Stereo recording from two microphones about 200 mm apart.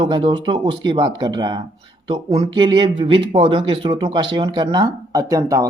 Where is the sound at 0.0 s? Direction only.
25° right (ahead or behind).